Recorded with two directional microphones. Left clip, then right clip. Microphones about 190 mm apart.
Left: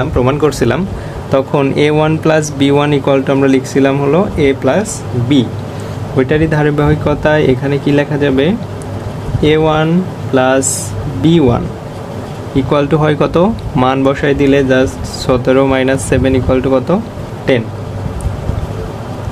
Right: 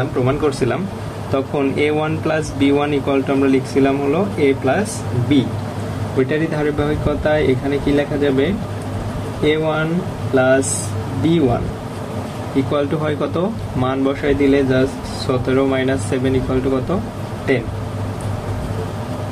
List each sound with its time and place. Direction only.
0.2 s speech: 55° left (ahead or behind)
6.1 s speech: 50° left (ahead or behind)
12.7 s speech: 55° left (ahead or behind)